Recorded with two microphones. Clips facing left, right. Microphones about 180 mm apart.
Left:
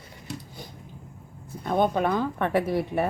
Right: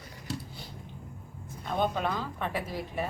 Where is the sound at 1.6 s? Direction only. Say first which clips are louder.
Left 6 dB; 55° left (ahead or behind).